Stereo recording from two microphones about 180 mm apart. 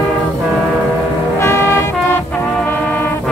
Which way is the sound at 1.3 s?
15° left (ahead or behind).